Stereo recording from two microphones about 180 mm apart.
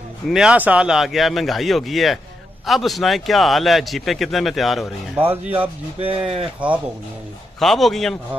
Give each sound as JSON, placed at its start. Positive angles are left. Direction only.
{"t": 0.3, "sound": "a man's voice", "side_deg": -5}
{"t": 5.1, "sound": "speech", "side_deg": -10}
{"t": 5.9, "sound": "speech", "side_deg": -35}
{"t": 7.6, "sound": "a man's voice", "side_deg": 0}